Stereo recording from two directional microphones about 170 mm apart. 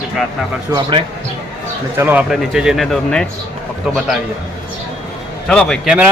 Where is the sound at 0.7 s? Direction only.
30° right (ahead or behind).